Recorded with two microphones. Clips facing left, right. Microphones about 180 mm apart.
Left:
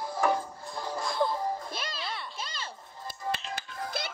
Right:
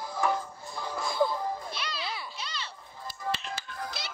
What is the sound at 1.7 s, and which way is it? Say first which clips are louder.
Music: even; 45° left (ahead or behind).